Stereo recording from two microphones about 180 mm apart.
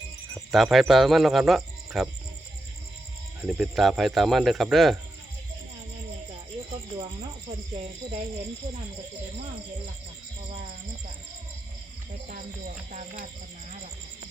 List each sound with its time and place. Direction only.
0.5 s speech: centre (ahead or behind)
3.4 s speech: centre (ahead or behind)
12.3 s speech: 45° right (ahead or behind)